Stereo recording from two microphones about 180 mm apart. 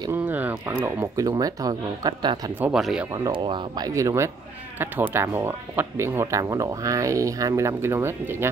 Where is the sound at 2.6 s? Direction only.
5° right (ahead or behind).